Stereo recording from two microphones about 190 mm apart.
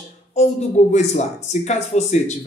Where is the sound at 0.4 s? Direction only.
35° left (ahead or behind).